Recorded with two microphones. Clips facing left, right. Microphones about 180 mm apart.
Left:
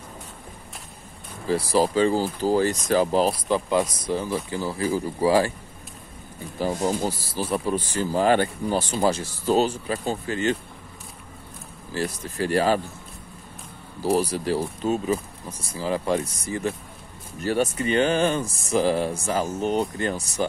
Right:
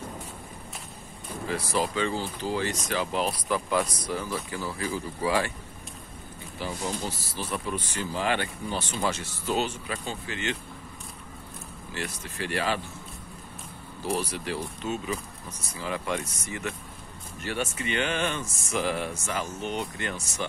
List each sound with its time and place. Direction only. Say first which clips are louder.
1.5 s speech: left 8 dB; 35° left (ahead or behind)
6.6 s speech: left 8 dB; 45° left (ahead or behind)
11.9 s speech: left 8 dB; 40° left (ahead or behind)
14.0 s speech: left 8 dB; 35° left (ahead or behind)